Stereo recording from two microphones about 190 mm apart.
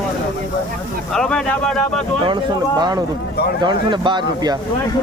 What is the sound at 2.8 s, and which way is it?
Speech, 20° right (ahead or behind).